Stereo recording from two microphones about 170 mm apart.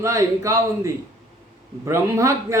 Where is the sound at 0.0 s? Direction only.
20° right (ahead or behind).